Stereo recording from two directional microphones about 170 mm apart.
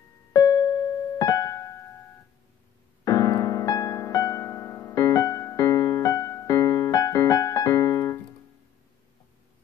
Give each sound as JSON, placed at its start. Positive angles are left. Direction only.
{"t": 0.3, "sound": "music", "side_deg": 20}
{"t": 3.1, "sound": "piano", "side_deg": 20}